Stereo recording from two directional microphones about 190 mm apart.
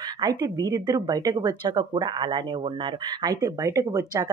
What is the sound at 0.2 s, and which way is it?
Speech, 20° right (ahead or behind).